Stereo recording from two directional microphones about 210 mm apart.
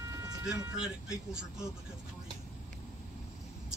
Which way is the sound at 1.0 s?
5° right (ahead or behind).